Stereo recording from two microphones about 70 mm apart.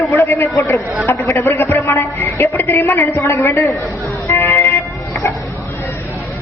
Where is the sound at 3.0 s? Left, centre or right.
Left.